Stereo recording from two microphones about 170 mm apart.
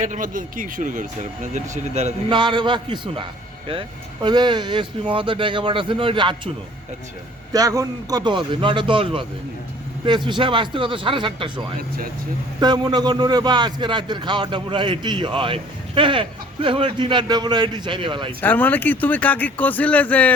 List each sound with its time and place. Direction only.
0.0 s speech: 50° right (ahead or behind)
2.3 s a man's voice: 30° right (ahead or behind)
7.5 s a man's voice: 20° right (ahead or behind)
18.3 s speech: 10° left (ahead or behind)